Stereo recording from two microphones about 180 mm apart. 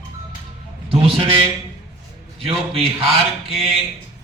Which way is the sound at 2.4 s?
30° right (ahead or behind).